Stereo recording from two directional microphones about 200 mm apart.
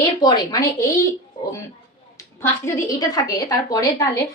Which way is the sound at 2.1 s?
15° left (ahead or behind).